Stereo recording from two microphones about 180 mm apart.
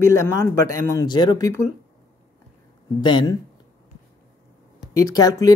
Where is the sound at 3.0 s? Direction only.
25° left (ahead or behind).